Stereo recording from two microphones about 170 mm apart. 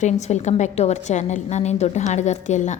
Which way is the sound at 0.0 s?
40° left (ahead or behind).